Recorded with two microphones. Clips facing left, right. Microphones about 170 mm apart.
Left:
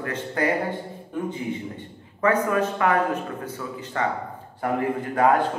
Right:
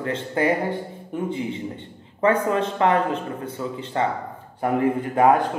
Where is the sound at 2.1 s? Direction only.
25° right (ahead or behind).